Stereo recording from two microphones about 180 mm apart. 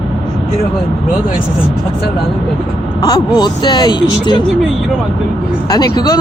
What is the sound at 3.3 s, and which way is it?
Speech, 25° left (ahead or behind).